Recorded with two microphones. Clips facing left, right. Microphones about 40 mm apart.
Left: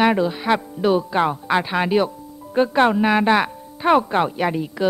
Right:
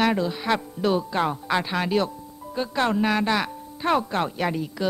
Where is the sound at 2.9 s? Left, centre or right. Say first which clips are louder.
Left 6 dB; centre.